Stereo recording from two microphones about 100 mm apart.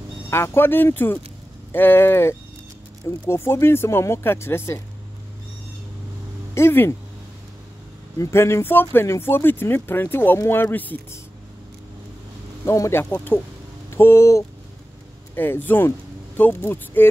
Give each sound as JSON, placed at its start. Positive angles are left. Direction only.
{"t": 0.3, "sound": "speech", "side_deg": 25}
{"t": 6.5, "sound": "speech", "side_deg": 25}
{"t": 8.2, "sound": "speech", "side_deg": 25}
{"t": 12.6, "sound": "speech", "side_deg": 30}
{"t": 13.0, "sound": "speech", "side_deg": 20}